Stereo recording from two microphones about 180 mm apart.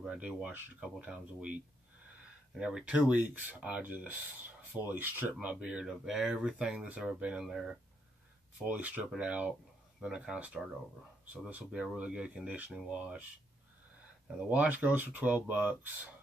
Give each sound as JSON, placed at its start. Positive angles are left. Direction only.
{"t": 0.0, "sound": "speech", "side_deg": -5}
{"t": 2.5, "sound": "speech", "side_deg": -5}
{"t": 14.2, "sound": "speech", "side_deg": -10}